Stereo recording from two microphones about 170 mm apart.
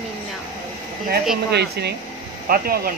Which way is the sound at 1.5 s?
75° right (ahead or behind).